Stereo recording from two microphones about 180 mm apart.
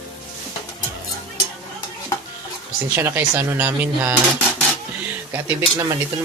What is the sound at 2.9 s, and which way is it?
Speech, 10° right (ahead or behind).